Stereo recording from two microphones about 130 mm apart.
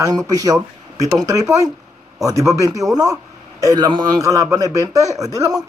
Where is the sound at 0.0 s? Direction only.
25° right (ahead or behind).